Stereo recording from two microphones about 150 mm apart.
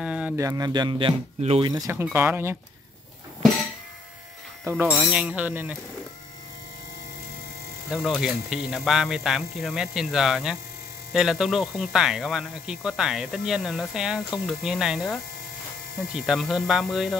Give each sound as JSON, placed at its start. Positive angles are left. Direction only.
{"t": 0.0, "sound": "a sound", "side_deg": -5}
{"t": 0.4, "sound": "speech", "side_deg": -25}
{"t": 1.7, "sound": "speech", "side_deg": -20}
{"t": 4.6, "sound": "speech", "side_deg": -15}
{"t": 7.9, "sound": "speech", "side_deg": -5}
{"t": 16.3, "sound": "speech", "side_deg": 0}